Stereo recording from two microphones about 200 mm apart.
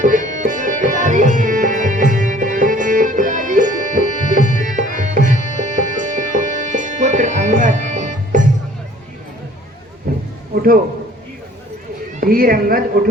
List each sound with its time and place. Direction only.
0.0 s music: 40° right (ahead or behind)
10.5 s a sound: 45° right (ahead or behind)
12.2 s a woman's voice: 45° right (ahead or behind)